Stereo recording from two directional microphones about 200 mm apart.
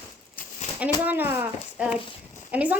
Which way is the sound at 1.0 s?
10° right (ahead or behind).